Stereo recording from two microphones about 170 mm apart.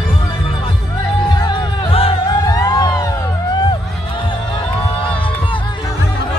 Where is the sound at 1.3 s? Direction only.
25° left (ahead or behind).